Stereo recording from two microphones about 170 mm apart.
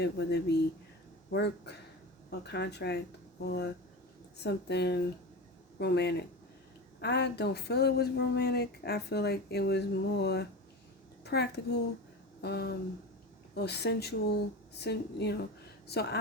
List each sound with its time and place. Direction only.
0.0 s a child's voice: 75° left (ahead or behind)
12.4 s a sound: 70° left (ahead or behind)
13.6 s speech: 75° left (ahead or behind)